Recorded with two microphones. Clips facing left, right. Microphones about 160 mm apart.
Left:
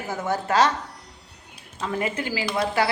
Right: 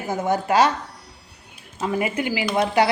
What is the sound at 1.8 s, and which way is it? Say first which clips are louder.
Speech: right 4 dB; 10° right (ahead or behind).